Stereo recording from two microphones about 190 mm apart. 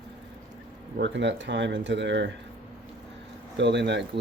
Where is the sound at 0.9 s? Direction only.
70° right (ahead or behind).